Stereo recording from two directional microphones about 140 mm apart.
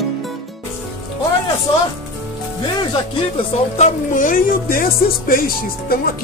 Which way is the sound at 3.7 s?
60° left (ahead or behind).